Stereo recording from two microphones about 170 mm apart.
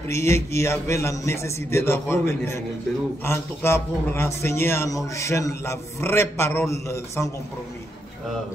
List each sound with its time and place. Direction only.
0.1 s a man's voice: 15° left (ahead or behind)